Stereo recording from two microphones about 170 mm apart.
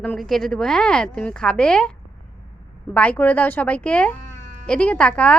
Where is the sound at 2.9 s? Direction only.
10° left (ahead or behind).